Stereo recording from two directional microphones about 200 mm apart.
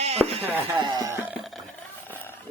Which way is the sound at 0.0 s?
30° right (ahead or behind).